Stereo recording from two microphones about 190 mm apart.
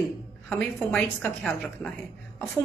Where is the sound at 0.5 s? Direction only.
5° left (ahead or behind).